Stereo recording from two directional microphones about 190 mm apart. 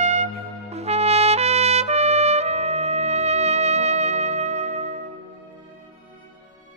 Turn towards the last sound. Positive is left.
turn(degrees=-35)  # may be behind; listen again after turning